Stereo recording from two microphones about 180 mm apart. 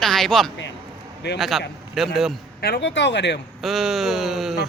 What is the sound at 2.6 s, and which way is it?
Speech, 70° left (ahead or behind).